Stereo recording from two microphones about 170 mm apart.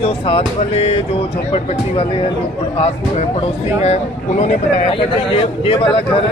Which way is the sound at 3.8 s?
40° left (ahead or behind).